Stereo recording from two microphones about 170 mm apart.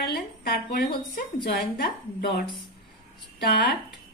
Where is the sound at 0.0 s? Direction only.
70° left (ahead or behind).